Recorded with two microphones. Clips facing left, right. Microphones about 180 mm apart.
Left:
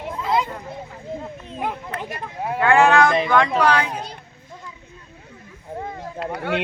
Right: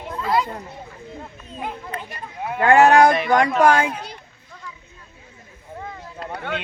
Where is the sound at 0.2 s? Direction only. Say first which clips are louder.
Right 1 dB; 20° left (ahead or behind).